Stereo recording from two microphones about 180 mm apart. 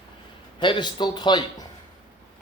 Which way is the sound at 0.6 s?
25° left (ahead or behind).